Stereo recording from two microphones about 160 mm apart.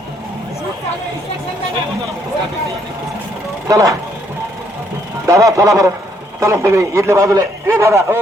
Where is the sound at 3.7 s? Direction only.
20° right (ahead or behind).